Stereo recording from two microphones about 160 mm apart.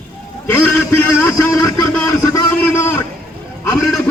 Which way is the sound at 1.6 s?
20° left (ahead or behind).